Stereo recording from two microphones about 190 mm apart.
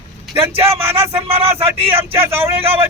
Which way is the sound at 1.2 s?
30° right (ahead or behind).